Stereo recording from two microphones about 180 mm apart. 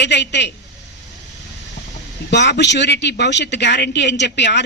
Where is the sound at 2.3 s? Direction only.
70° left (ahead or behind).